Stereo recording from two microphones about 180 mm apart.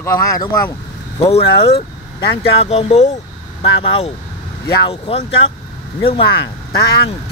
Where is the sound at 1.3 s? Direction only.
35° left (ahead or behind).